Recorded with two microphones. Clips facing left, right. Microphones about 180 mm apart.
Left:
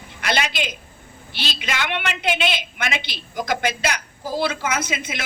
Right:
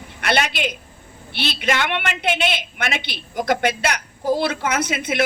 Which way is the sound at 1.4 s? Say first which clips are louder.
Right 5 dB; 55° right (ahead or behind).